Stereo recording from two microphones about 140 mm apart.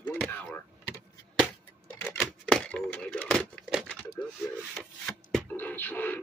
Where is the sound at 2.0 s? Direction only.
15° left (ahead or behind).